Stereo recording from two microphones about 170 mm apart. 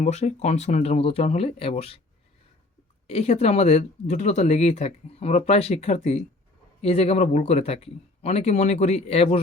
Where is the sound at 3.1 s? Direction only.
35° left (ahead or behind).